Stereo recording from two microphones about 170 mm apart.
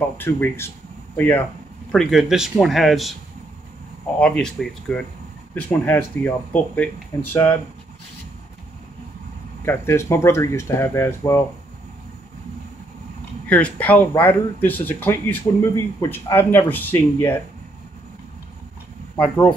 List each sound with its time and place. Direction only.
0.2 s speech: 15° left (ahead or behind)
4.2 s speech: 5° left (ahead or behind)
9.7 s speech: 15° left (ahead or behind)
13.5 s speech: 10° left (ahead or behind)
19.1 s speech: 10° left (ahead or behind)